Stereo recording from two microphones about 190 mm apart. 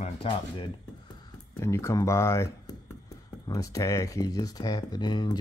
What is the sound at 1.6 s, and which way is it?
Speech, 15° left (ahead or behind).